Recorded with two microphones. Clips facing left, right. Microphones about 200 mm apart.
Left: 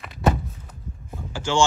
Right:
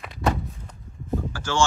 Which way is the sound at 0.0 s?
Centre (ahead or behind).